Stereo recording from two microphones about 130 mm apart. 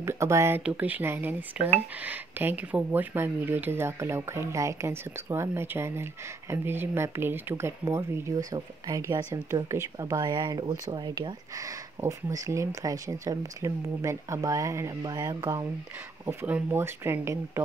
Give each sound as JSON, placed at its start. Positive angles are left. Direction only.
{"t": 0.0, "sound": "speech", "side_deg": -20}
{"t": 0.6, "sound": "speech", "side_deg": -10}
{"t": 16.3, "sound": "speech", "side_deg": -15}